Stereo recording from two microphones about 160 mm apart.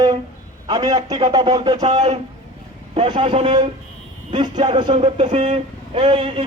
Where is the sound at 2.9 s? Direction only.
35° right (ahead or behind).